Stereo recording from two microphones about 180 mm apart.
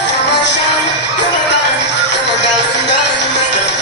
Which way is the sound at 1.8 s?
75° left (ahead or behind).